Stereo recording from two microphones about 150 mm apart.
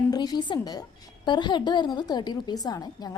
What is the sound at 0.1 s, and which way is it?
A woman's voice, 25° left (ahead or behind).